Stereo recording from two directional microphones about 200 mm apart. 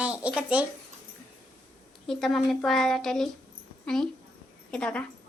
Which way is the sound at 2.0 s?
Centre (ahead or behind).